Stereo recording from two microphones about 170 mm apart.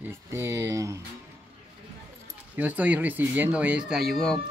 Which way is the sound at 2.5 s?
10° right (ahead or behind).